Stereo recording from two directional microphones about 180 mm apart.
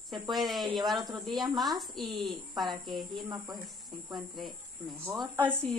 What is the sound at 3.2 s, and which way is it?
Speech, 20° right (ahead or behind).